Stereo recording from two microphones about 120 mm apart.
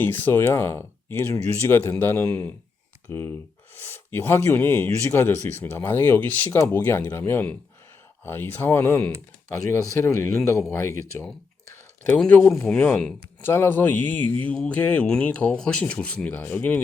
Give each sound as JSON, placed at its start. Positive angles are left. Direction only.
{"t": 0.0, "sound": "speech", "side_deg": 15}
{"t": 12.4, "sound": "speech", "side_deg": 20}
{"t": 12.6, "sound": "speech", "side_deg": 10}